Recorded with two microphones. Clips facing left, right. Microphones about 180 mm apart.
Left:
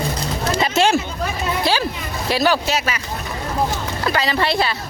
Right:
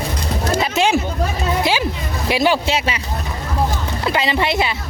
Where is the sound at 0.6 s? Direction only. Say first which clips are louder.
Left 2 dB; 15° right (ahead or behind).